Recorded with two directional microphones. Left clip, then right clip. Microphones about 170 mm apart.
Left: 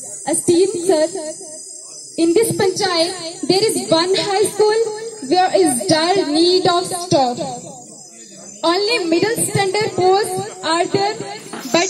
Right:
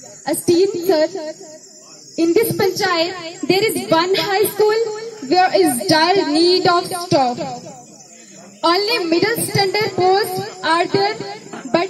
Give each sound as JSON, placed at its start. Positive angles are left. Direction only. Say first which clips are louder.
{"t": 0.2, "sound": "a woman's voice", "louder": "even", "side_deg": 0}
{"t": 8.6, "sound": "a woman's voice", "louder": "even", "side_deg": 5}